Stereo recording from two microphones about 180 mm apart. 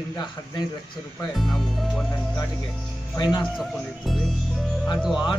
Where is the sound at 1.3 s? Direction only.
Centre (ahead or behind).